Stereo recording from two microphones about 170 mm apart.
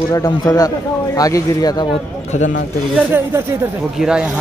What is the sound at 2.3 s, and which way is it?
Speech, 40° left (ahead or behind).